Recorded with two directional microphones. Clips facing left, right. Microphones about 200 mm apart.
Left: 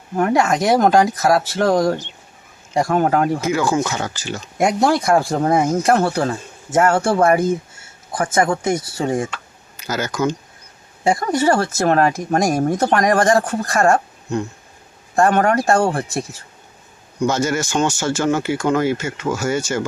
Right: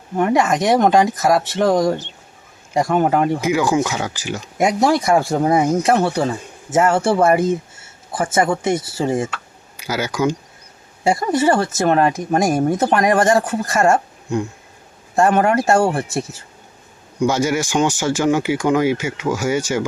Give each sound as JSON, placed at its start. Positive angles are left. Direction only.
{"t": 0.2, "sound": "speech", "side_deg": 0}
{"t": 3.4, "sound": "speech", "side_deg": -15}
{"t": 4.5, "sound": "speech", "side_deg": 0}
{"t": 15.9, "sound": "speech", "side_deg": -25}
{"t": 17.2, "sound": "speech", "side_deg": -10}